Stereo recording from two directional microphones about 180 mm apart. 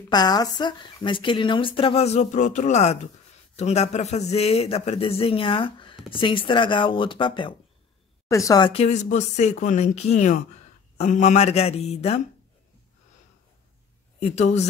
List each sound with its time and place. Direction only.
0.1 s a woman's voice: 20° left (ahead or behind)
8.8 s speech: 40° left (ahead or behind)
14.2 s speech: 35° left (ahead or behind)